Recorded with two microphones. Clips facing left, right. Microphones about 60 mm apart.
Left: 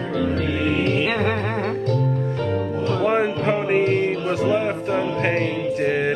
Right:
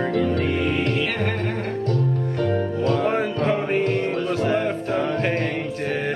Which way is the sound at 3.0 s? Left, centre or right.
Left.